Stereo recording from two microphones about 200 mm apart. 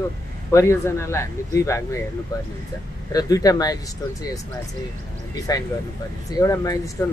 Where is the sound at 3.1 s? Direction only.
20° left (ahead or behind).